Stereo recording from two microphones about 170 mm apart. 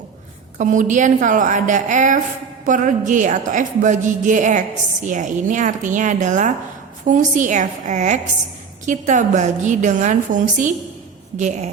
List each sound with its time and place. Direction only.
0.6 s a woman's voice: 45° right (ahead or behind)